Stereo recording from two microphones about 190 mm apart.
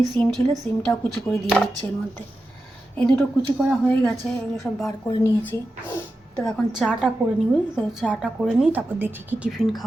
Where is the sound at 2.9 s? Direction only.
5° left (ahead or behind).